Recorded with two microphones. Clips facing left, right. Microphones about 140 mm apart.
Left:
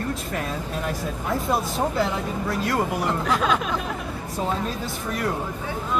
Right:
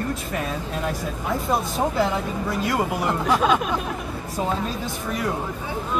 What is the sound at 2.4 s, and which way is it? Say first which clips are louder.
Speech: even; centre (ahead or behind).